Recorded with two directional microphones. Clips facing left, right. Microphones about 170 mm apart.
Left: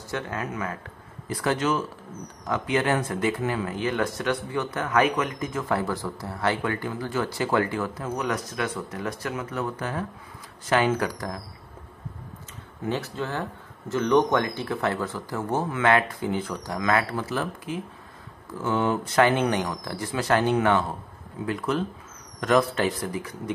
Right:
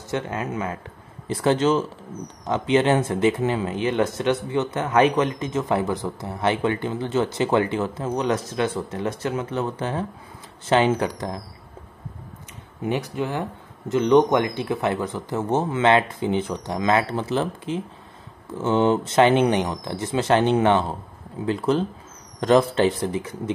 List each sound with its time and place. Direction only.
0.1 s speech: 20° right (ahead or behind)
12.8 s speech: 15° right (ahead or behind)